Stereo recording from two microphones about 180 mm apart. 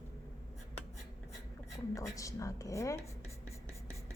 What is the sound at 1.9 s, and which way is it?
Speech, 20° left (ahead or behind).